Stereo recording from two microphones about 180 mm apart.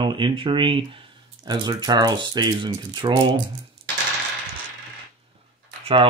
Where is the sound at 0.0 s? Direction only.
25° right (ahead or behind).